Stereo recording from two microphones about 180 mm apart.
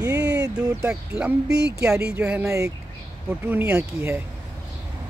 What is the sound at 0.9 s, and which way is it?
Speech, 5° right (ahead or behind).